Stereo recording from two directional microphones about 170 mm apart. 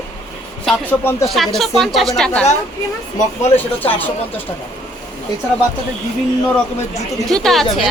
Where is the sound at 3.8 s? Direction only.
10° left (ahead or behind).